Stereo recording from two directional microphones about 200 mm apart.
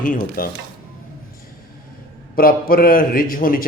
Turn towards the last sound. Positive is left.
turn(degrees=45)  # may be behind; listen again after turning